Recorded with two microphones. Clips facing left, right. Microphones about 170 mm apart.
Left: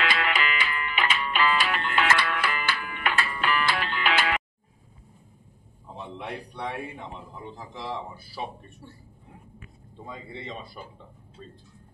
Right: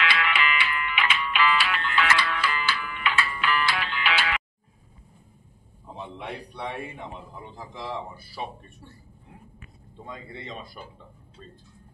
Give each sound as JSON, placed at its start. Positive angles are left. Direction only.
{"t": 0.0, "sound": "music", "side_deg": 45}
{"t": 5.9, "sound": "a sound", "side_deg": -5}
{"t": 6.7, "sound": "a man's voice", "side_deg": 0}
{"t": 10.0, "sound": "a man's voice", "side_deg": 5}